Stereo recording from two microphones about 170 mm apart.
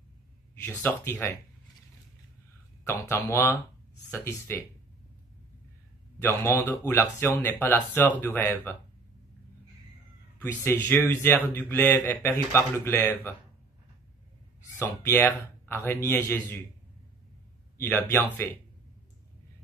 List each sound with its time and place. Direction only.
0.6 s speech: 10° left (ahead or behind)
2.9 s speech: 15° left (ahead or behind)
6.2 s speech: 15° left (ahead or behind)
10.4 s speech: 15° left (ahead or behind)
14.8 s speech: 15° left (ahead or behind)
17.7 s speech: 10° left (ahead or behind)